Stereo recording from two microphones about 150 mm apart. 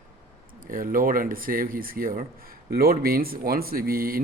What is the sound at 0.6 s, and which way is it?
Speech, 65° right (ahead or behind).